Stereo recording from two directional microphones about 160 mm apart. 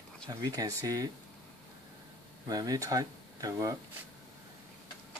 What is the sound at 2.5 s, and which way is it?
Speech, 20° right (ahead or behind).